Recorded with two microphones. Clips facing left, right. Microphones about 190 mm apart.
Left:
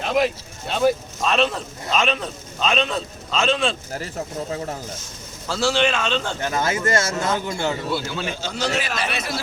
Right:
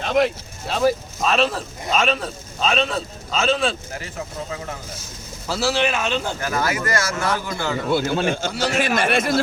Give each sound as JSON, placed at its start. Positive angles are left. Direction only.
{"t": 0.0, "sound": "speech", "side_deg": 0}
{"t": 5.5, "sound": "speech", "side_deg": -5}
{"t": 6.4, "sound": "speech", "side_deg": 25}
{"t": 7.9, "sound": "a man's voice", "side_deg": -50}